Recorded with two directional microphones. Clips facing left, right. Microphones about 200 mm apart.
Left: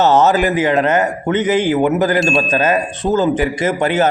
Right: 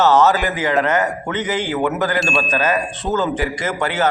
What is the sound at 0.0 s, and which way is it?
Speech, 20° left (ahead or behind).